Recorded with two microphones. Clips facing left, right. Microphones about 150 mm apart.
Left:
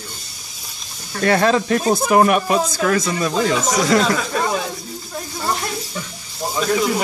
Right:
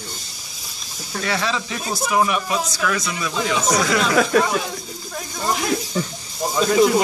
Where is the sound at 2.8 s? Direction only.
40° left (ahead or behind).